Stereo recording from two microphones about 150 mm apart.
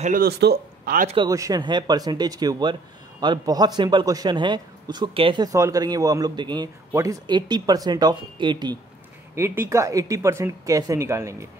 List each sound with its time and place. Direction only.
0.0 s speech: 80° right
1.2 s speech: 25° right (ahead or behind)
9.3 s speech: 15° right (ahead or behind)